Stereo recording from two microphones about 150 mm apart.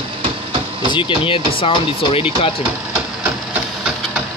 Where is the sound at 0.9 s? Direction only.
35° left (ahead or behind).